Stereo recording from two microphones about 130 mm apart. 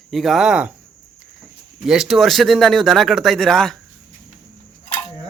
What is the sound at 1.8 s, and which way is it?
Speech, 5° right (ahead or behind).